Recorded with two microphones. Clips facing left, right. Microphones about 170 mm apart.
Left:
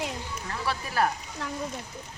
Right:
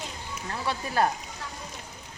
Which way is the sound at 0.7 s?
25° right (ahead or behind).